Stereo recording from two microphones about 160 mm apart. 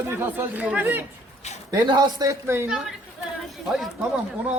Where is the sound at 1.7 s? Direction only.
25° right (ahead or behind).